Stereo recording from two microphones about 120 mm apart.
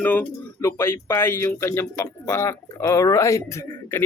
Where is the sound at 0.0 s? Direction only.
15° left (ahead or behind).